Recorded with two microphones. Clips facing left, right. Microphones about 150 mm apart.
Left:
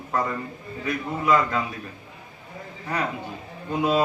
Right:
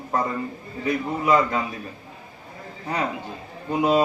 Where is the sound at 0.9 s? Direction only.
20° right (ahead or behind).